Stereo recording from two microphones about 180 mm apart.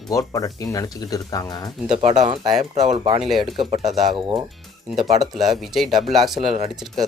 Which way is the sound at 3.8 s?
Centre (ahead or behind).